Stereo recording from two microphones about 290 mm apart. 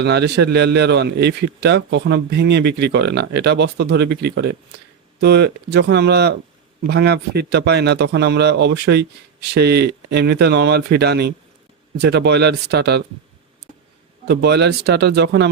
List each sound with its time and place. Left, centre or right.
0.0 s a man's voice: right
14.3 s a man's voice: right